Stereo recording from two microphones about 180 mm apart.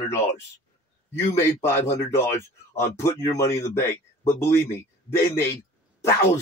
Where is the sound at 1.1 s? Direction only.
15° left (ahead or behind).